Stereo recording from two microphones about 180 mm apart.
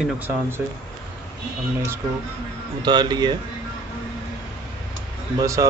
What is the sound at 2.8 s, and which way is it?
Speech, 25° right (ahead or behind).